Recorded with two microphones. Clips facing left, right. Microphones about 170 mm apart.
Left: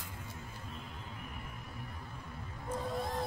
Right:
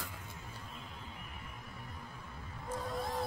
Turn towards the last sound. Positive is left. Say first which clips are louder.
# left 1 dB
turn(degrees=0)  # may be behind; listen again after turning